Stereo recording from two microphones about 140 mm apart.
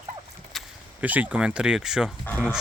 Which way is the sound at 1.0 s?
10° right (ahead or behind).